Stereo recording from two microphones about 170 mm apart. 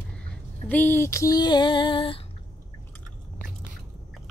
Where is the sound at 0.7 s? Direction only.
10° left (ahead or behind); by 2.1 s 30° left (ahead or behind).